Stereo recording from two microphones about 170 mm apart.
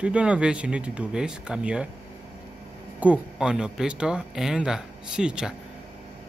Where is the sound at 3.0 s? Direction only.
5° right (ahead or behind).